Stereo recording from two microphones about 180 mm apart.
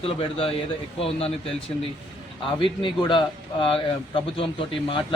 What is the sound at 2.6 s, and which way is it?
Speech, 25° left (ahead or behind).